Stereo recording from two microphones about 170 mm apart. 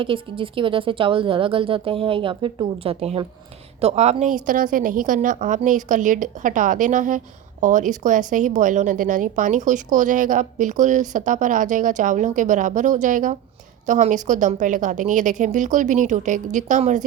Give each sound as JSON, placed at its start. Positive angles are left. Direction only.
{"t": 0.0, "sound": "a woman's voice", "side_deg": -30}